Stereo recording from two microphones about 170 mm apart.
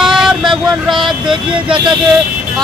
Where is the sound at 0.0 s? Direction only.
Centre (ahead or behind).